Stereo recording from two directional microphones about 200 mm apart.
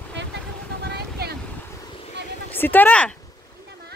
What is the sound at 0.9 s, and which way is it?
Vehicle, 55° right (ahead or behind).